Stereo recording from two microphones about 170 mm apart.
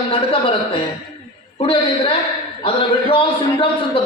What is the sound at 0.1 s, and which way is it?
A man's voice, 35° left (ahead or behind).